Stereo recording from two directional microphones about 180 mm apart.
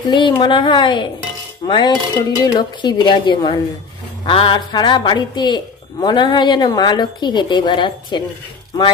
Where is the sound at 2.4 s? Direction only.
25° left (ahead or behind).